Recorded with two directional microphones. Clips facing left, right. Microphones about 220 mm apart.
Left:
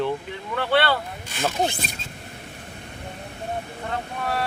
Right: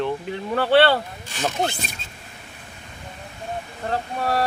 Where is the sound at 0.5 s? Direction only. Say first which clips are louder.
Right 5 dB; 30° right (ahead or behind).